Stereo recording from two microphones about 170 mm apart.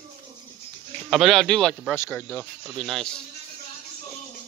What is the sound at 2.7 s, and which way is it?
Speech, centre (ahead or behind).